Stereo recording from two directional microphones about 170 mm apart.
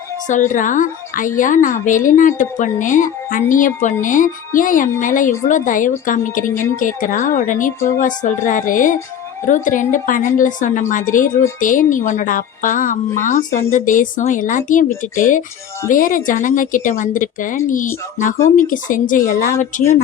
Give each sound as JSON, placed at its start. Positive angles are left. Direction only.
{"t": 0.3, "sound": "speech", "side_deg": 50}
{"t": 6.4, "sound": "speech", "side_deg": 15}
{"t": 6.7, "sound": "speech", "side_deg": 55}